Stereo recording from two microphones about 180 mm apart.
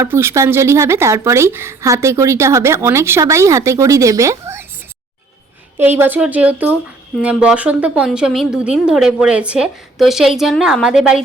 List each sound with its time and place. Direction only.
0.0 s a woman's voice: 15° right (ahead or behind)
5.7 s a woman's voice: 10° right (ahead or behind)